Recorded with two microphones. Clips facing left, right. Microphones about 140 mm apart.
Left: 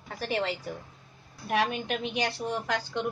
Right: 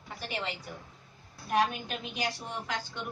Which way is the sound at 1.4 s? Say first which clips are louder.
Left 1 dB; 65° left (ahead or behind).